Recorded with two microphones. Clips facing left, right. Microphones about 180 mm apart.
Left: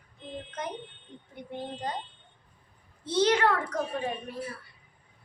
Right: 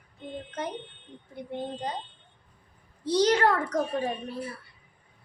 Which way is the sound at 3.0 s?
35° right (ahead or behind).